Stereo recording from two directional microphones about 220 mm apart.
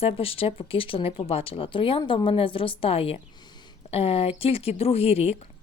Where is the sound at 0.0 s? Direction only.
25° left (ahead or behind).